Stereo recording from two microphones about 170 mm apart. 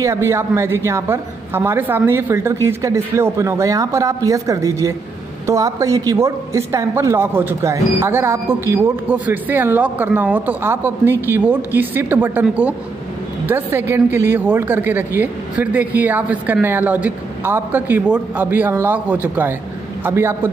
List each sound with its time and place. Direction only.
0.0 s a woman's voice: 15° right (ahead or behind)